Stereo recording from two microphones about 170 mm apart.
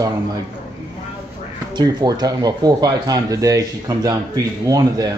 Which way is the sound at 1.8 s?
25° right (ahead or behind).